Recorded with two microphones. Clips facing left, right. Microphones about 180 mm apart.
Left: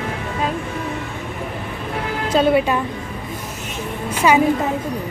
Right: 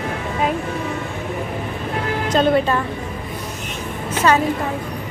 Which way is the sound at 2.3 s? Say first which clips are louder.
Left 1 dB; 10° left (ahead or behind).